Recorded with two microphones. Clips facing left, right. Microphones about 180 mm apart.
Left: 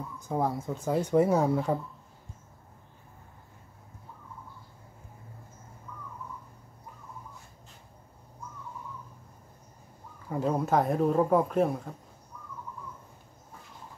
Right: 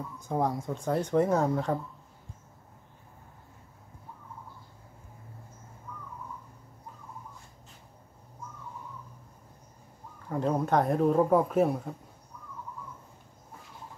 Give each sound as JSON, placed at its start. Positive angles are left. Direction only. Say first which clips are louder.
{"t": 0.2, "sound": "speech", "louder": "even", "side_deg": 0}
{"t": 10.3, "sound": "speech", "louder": "even", "side_deg": 5}